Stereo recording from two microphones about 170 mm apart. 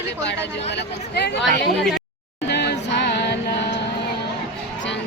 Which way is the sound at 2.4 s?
90° left.